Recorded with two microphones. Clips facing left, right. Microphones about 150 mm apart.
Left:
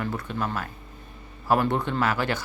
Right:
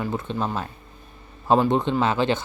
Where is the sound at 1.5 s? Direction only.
20° right (ahead or behind).